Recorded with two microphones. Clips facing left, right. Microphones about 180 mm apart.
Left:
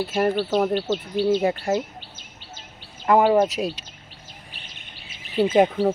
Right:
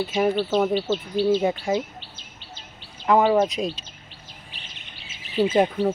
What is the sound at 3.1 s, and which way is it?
Speech, 5° left (ahead or behind).